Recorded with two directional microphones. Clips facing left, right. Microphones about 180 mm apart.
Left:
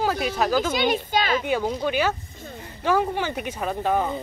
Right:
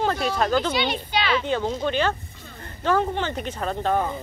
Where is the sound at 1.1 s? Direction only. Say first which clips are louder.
Left 1 dB; 45° left (ahead or behind).